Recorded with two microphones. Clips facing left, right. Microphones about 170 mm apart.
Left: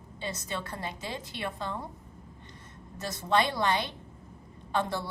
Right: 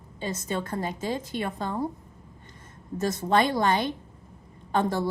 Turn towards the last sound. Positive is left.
turn(degrees=-45)  # may be behind; listen again after turning